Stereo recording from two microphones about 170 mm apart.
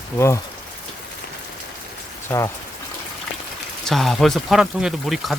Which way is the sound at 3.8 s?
Centre (ahead or behind).